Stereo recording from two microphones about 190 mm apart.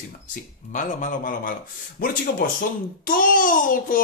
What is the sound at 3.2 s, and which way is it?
Speech, 45° left (ahead or behind).